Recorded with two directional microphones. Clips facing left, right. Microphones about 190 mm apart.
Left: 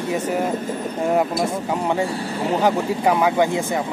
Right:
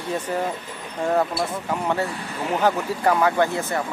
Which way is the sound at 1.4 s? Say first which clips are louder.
Left 3 dB; 15° left (ahead or behind).